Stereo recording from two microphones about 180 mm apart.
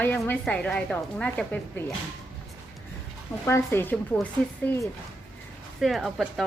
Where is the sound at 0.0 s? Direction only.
10° left (ahead or behind).